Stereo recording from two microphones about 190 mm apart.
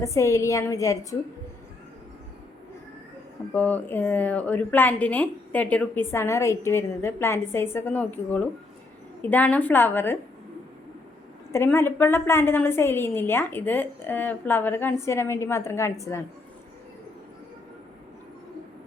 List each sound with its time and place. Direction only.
0.0 s a woman's voice: 15° left (ahead or behind)
3.5 s a woman's voice: 10° left (ahead or behind)
11.5 s a woman's voice: 10° left (ahead or behind)